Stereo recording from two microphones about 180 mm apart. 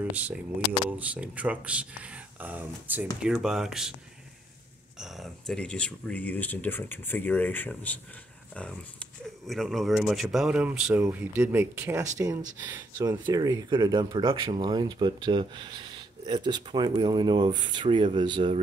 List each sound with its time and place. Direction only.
0.1 s speech: 10° right (ahead or behind)
4.9 s speech: centre (ahead or behind); by 18.6 s 30° right (ahead or behind)